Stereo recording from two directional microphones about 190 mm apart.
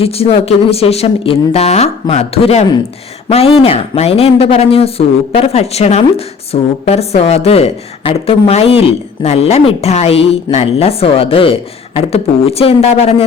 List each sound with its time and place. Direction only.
0.0 s speech: 30° left (ahead or behind)